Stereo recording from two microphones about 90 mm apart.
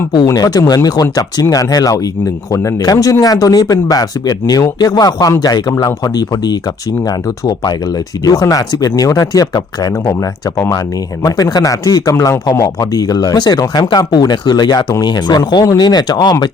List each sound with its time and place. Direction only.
0.3 s speech: 45° left (ahead or behind)
11.2 s a man's voice: 40° left (ahead or behind)